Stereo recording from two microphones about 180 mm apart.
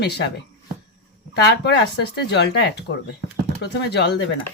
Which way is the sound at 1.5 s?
65° left (ahead or behind).